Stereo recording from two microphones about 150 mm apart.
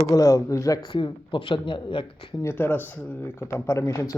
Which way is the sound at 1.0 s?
35° left (ahead or behind).